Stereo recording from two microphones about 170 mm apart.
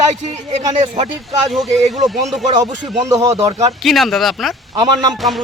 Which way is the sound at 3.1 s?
20° right (ahead or behind).